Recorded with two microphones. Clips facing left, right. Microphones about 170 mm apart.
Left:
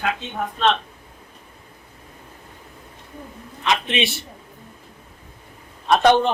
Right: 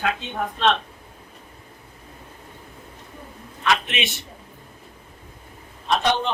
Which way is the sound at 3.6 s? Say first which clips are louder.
Left 2 dB; 30° left (ahead or behind).